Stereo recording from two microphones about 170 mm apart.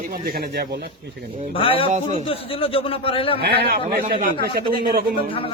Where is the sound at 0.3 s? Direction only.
65° right (ahead or behind).